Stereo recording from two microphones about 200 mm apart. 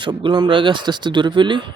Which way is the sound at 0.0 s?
25° right (ahead or behind).